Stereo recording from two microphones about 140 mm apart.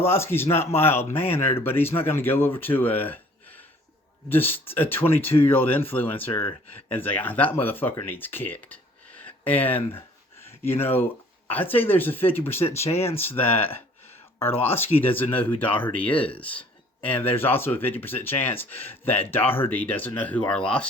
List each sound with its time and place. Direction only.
0.0 s speech: 15° left (ahead or behind)